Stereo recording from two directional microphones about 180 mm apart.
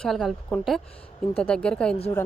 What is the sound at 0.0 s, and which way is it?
Speech, centre (ahead or behind).